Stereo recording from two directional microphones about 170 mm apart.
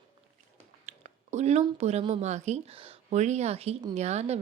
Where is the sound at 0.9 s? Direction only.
40° right (ahead or behind).